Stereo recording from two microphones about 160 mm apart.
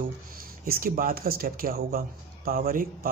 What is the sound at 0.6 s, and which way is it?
Speech, 65° right (ahead or behind).